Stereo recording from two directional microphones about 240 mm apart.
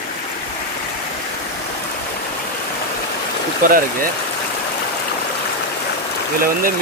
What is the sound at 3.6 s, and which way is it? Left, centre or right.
Speech, right.